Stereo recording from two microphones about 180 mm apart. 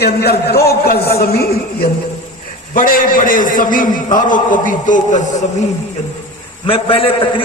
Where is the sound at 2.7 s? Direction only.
50° left (ahead or behind).